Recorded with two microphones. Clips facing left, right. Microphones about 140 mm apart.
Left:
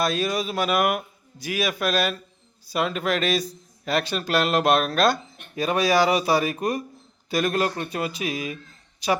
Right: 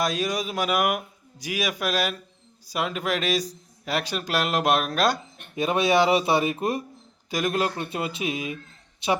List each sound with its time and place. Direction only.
0.0 s a man's voice: 15° right (ahead or behind)
7.3 s speech: 15° right (ahead or behind)